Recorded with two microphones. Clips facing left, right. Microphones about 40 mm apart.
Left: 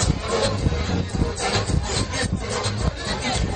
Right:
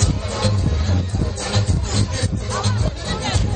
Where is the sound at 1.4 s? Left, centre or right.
Left.